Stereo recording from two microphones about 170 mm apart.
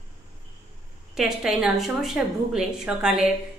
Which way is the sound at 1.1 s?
Centre (ahead or behind).